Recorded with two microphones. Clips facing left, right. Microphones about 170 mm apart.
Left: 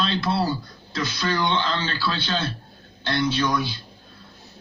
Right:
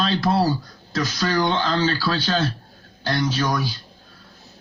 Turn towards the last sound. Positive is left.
turn(degrees=-40)  # may be behind; listen again after turning